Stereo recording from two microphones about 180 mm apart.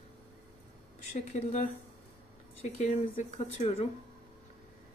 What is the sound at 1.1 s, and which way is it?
Speech, 40° left (ahead or behind).